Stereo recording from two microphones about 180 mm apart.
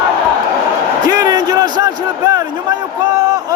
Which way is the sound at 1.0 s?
20° right (ahead or behind).